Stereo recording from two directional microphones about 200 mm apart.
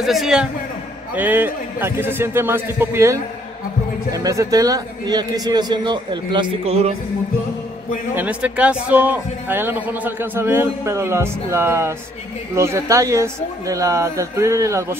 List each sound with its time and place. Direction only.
0.0 s a man's voice: centre (ahead or behind); by 6.9 s 30° right (ahead or behind)
8.1 s a man's voice: 10° right (ahead or behind)